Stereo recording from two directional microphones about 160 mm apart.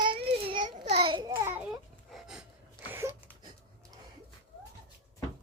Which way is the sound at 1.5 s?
10° right (ahead or behind).